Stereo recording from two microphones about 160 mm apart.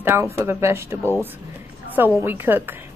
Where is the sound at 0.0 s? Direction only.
15° right (ahead or behind).